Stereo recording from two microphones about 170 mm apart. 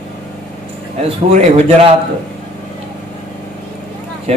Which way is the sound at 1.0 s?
35° right (ahead or behind).